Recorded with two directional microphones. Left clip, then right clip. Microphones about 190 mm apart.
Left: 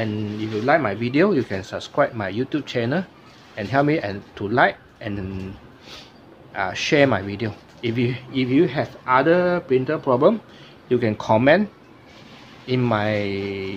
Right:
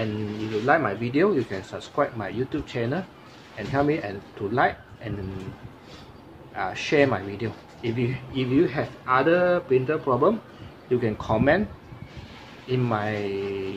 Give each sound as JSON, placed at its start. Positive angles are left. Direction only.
{"t": 0.7, "sound": "speech", "side_deg": 45}
{"t": 6.5, "sound": "speech", "side_deg": 45}
{"t": 12.6, "sound": "speech", "side_deg": 50}